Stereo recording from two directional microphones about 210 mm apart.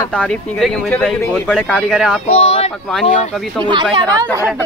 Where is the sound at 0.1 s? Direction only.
5° left (ahead or behind).